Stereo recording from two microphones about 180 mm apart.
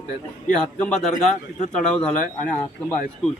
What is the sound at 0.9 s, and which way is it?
Speech, 5° left (ahead or behind).